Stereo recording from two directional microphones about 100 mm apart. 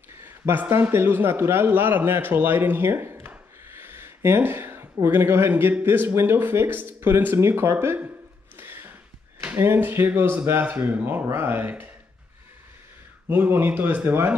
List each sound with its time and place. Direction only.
0.2 s a man's voice: 20° right (ahead or behind)
8.5 s a sound: 20° right (ahead or behind)
9.4 s speech: 20° right (ahead or behind)
13.3 s speech: 20° right (ahead or behind)